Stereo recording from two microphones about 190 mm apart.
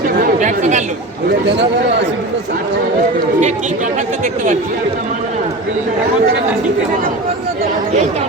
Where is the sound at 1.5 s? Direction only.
65° right (ahead or behind).